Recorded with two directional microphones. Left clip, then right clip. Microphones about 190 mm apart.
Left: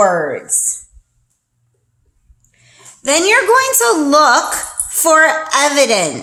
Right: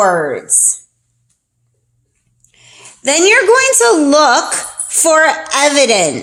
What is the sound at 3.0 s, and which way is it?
Speech, 25° right (ahead or behind).